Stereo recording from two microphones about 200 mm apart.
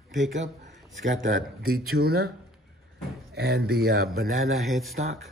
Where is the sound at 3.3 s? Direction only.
55° right (ahead or behind).